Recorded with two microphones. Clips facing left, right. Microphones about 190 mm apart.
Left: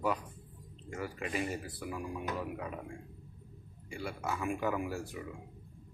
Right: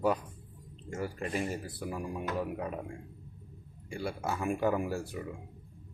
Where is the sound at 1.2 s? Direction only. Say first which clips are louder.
Right 1 dB; centre (ahead or behind).